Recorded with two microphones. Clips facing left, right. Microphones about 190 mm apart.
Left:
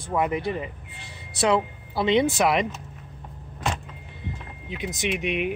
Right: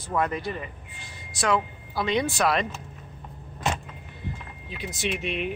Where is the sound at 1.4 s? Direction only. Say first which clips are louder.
Left 3 dB; 25° left (ahead or behind).